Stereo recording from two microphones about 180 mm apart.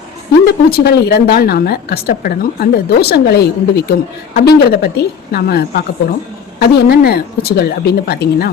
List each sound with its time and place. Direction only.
0.4 s a woman's voice: 60° left (ahead or behind)